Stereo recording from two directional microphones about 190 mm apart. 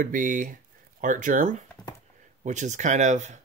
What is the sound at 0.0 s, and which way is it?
Speech, 45° right (ahead or behind).